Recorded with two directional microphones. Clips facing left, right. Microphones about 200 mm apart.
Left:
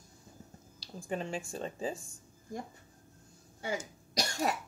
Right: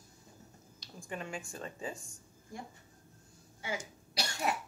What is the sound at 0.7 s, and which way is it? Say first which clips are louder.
Speech: left 6 dB; 30° left (ahead or behind).